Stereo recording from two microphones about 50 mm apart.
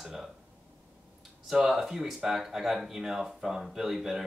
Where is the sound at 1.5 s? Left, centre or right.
Centre.